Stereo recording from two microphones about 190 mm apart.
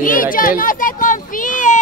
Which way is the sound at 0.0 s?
45° left (ahead or behind).